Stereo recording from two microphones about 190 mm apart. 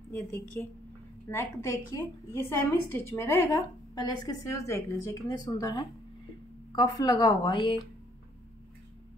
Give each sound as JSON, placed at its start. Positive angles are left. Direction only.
{"t": 0.6, "sound": "a woman's voice", "side_deg": 5}